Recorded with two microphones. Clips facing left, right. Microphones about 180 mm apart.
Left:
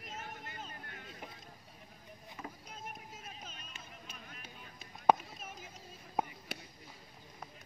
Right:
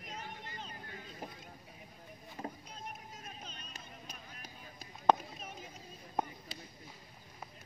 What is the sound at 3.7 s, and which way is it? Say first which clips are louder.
Music: right 1 dB; 40° right (ahead or behind).